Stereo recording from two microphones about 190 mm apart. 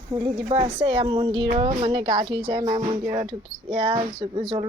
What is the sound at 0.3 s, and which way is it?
Speech, 30° right (ahead or behind).